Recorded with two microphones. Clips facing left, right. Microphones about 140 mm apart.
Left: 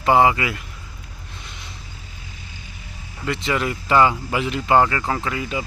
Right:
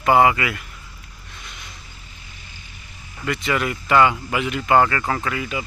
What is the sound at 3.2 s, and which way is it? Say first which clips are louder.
Speech: even; 25° left (ahead or behind).